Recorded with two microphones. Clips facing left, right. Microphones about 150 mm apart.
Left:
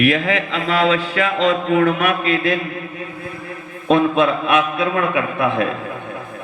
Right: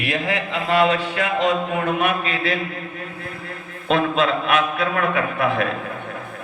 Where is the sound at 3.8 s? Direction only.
20° left (ahead or behind).